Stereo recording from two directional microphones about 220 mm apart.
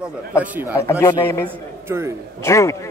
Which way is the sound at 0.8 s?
10° left (ahead or behind).